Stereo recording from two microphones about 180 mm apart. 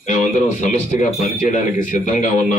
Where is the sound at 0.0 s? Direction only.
40° left (ahead or behind).